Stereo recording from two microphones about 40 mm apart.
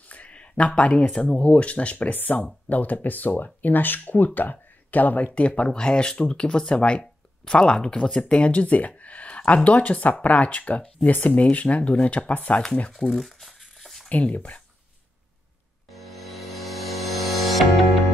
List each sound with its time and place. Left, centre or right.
0.1 s a sound: left
1.2 s speech: left
5.7 s speech: left
8.5 s speech: left
12.9 s crumpling: centre
14.0 s speech: left
15.9 s music: centre